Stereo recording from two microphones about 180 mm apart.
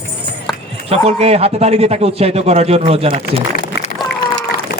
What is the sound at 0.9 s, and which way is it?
A man's voice, 35° right (ahead or behind).